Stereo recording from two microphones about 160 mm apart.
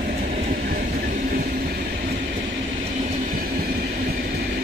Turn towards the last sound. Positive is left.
turn(degrees=-60)  # may be behind; listen again after turning